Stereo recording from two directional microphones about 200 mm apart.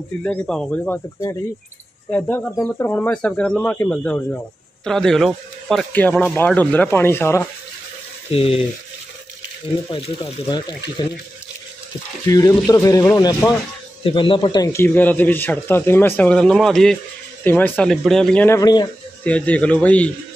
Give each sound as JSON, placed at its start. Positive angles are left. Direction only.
{"t": 0.2, "sound": "speech", "side_deg": 5}
{"t": 8.3, "sound": "speech", "side_deg": 30}
{"t": 9.8, "sound": "speech", "side_deg": 25}
{"t": 12.3, "sound": "speech", "side_deg": 20}
{"t": 19.2, "sound": "speech", "side_deg": 5}